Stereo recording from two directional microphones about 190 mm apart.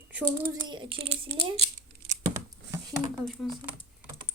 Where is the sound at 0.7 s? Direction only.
25° right (ahead or behind).